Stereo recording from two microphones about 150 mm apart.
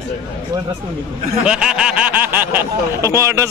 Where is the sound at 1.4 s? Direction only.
5° right (ahead or behind).